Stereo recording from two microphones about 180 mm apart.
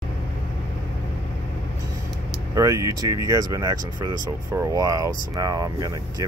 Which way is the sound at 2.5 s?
20° right (ahead or behind).